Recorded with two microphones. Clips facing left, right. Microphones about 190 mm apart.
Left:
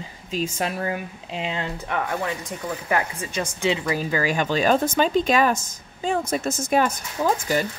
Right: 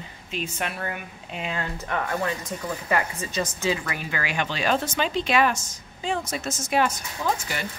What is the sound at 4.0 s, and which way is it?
A woman's voice, 35° left (ahead or behind).